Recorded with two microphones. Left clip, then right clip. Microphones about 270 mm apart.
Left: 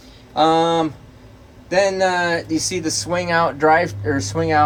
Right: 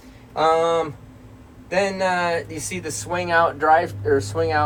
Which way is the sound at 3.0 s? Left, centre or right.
Left.